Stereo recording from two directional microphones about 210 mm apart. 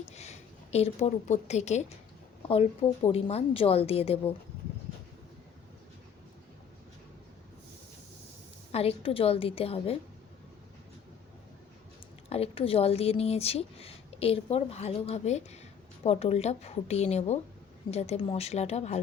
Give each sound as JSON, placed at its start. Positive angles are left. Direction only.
{"t": 0.1, "sound": "a woman's voice", "side_deg": 30}
{"t": 8.7, "sound": "a woman's voice", "side_deg": 30}
{"t": 12.3, "sound": "a woman's voice", "side_deg": 25}